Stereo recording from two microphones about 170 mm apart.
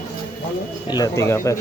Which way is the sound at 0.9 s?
20° left (ahead or behind).